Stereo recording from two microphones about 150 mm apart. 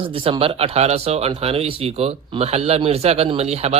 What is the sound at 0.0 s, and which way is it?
Speech, 35° right (ahead or behind).